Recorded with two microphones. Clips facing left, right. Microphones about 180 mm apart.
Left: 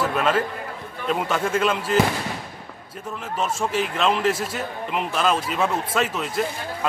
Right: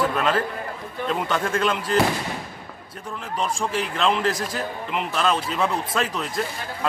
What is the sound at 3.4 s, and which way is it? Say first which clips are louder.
A man's voice: left 2 dB; 5° left (ahead or behind).